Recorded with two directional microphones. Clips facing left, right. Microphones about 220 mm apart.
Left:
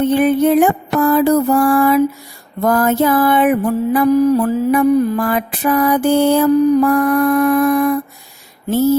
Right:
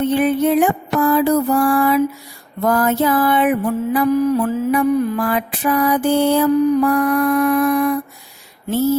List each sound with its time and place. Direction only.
0.0 s mantra: 45° left (ahead or behind)
6.8 s mantra: 45° left (ahead or behind)